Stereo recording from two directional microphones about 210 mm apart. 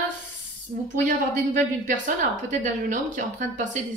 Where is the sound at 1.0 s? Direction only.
35° right (ahead or behind).